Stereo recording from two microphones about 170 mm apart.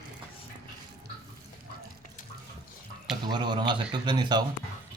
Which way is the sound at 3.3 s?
25° right (ahead or behind).